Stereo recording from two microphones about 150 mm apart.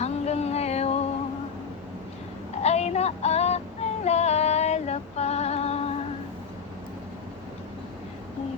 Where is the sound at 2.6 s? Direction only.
45° left (ahead or behind).